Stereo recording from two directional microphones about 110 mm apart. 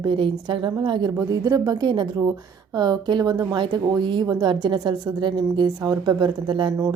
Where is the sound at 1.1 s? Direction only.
30° right (ahead or behind).